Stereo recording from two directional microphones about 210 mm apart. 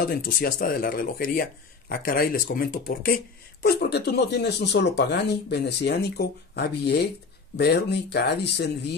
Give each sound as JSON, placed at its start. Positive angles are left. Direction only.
{"t": 0.0, "sound": "speech", "side_deg": 45}